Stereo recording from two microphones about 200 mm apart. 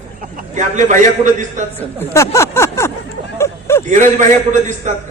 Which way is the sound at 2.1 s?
15° left (ahead or behind).